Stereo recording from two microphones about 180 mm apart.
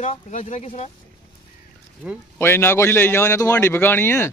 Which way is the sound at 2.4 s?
15° left (ahead or behind).